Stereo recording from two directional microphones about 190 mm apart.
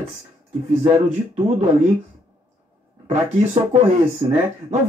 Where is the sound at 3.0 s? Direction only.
35° right (ahead or behind).